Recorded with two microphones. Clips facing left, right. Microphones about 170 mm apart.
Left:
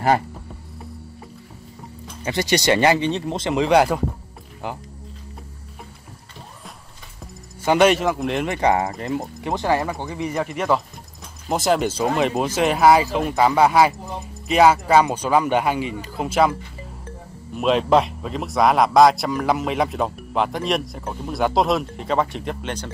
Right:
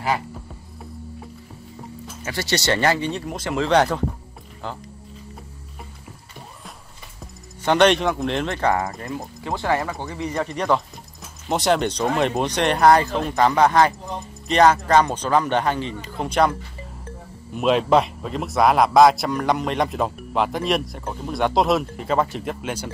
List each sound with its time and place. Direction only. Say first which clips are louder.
2.2 s speech: left 4 dB; 15° left (ahead or behind)
7.6 s a man's voice: left 1 dB; 5° left (ahead or behind)
8.5 s a man's voice: left 2 dB; 20° left (ahead or behind); by 22.8 s 5° right (ahead or behind)